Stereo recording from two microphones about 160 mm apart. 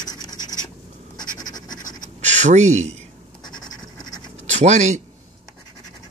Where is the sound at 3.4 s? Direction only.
25° left (ahead or behind).